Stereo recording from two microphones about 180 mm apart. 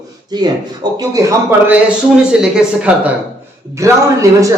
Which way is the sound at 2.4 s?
5° right (ahead or behind).